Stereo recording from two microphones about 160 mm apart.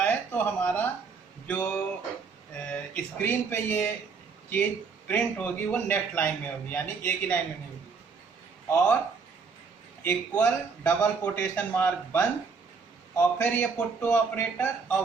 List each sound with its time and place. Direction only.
0.0 s a sound: 10° left (ahead or behind)
1.5 s a man's voice: 5° left (ahead or behind)
10.0 s a man's voice: 10° left (ahead or behind)